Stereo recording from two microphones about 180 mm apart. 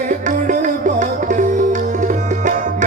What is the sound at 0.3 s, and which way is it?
Music, 45° right (ahead or behind).